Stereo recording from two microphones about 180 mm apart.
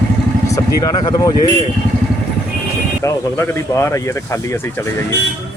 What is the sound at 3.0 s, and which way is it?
Speech, 15° left (ahead or behind).